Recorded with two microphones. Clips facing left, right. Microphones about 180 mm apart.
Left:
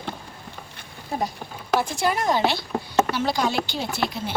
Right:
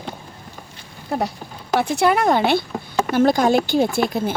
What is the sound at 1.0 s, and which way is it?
A woman's voice, 70° right (ahead or behind).